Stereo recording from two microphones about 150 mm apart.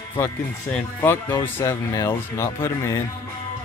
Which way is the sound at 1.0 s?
15° left (ahead or behind).